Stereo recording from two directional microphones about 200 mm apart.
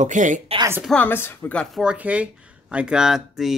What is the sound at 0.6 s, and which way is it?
Speech, 10° right (ahead or behind).